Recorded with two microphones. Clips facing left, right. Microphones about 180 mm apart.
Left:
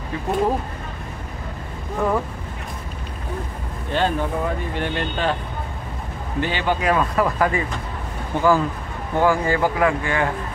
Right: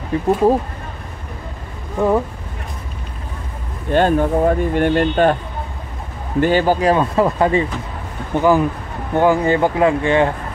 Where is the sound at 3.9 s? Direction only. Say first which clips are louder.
Right 7 dB; 50° right (ahead or behind).